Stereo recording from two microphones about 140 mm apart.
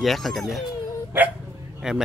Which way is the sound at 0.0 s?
Centre (ahead or behind).